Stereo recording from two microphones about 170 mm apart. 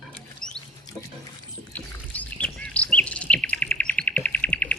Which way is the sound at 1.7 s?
10° left (ahead or behind).